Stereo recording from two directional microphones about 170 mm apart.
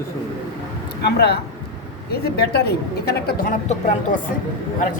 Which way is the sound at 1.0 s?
75° left (ahead or behind).